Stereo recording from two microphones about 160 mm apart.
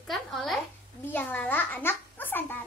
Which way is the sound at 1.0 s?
10° left (ahead or behind).